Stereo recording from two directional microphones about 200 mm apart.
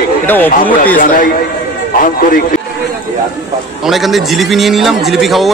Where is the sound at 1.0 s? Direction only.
40° left (ahead or behind).